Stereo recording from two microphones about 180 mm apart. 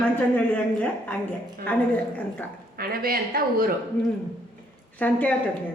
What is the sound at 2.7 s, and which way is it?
Speech, 55° right (ahead or behind).